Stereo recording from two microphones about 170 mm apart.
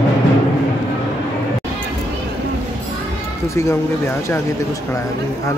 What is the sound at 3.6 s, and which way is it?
Speech, 15° left (ahead or behind).